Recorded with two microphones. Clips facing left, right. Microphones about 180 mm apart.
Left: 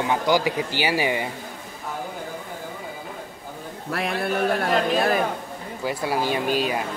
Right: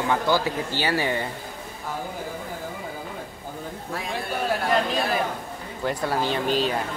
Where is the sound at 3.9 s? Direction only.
75° left (ahead or behind).